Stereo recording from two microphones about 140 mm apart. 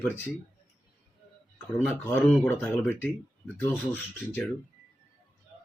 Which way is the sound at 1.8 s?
15° left (ahead or behind).